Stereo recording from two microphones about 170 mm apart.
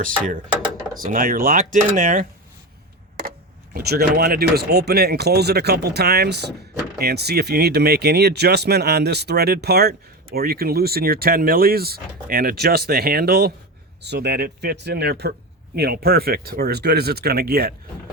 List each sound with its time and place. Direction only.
1.0 s speech: 55° right (ahead or behind)
3.8 s speech: 65° right (ahead or behind)
14.0 s speech: 75° right (ahead or behind)